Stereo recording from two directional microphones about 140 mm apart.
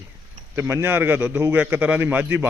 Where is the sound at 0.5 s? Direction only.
15° right (ahead or behind).